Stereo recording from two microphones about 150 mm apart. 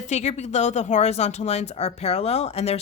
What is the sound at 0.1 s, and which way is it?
A woman's voice, 50° left (ahead or behind).